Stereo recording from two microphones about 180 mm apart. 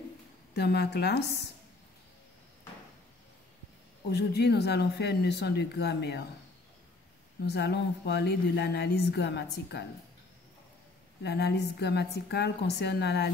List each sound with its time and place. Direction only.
0.6 s speech: 65° left (ahead or behind)
4.1 s speech: 65° left (ahead or behind)
7.4 s speech: 70° left (ahead or behind)
11.2 s speech: 65° left (ahead or behind)